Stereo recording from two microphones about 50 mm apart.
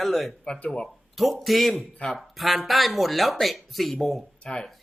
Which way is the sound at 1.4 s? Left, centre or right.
Centre.